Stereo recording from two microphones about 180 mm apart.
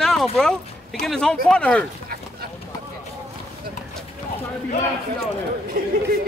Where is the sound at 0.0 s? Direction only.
Centre (ahead or behind).